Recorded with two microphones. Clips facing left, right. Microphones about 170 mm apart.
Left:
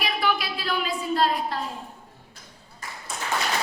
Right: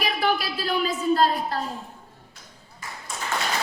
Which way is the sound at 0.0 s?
40° right (ahead or behind).